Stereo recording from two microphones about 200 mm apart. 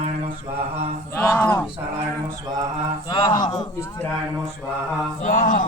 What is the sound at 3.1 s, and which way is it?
Speech, 20° left (ahead or behind).